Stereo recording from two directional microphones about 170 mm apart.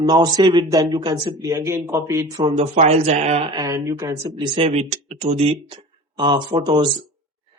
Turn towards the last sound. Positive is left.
turn(degrees=-25)  # may be behind; listen again after turning